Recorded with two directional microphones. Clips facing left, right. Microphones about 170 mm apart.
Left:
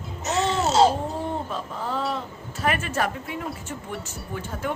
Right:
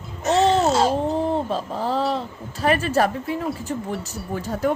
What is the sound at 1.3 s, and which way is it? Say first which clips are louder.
Speech: right 6 dB; 35° right (ahead or behind).